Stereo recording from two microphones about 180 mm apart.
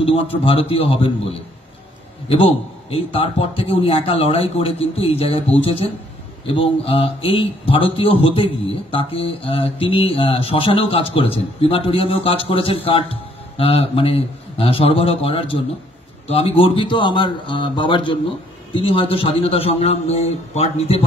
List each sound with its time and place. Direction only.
0.0 s speech: 30° left (ahead or behind)
2.2 s speech: 30° left (ahead or behind)